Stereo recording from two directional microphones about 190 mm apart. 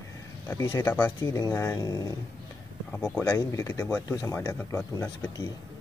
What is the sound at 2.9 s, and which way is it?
Speech, 5° left (ahead or behind).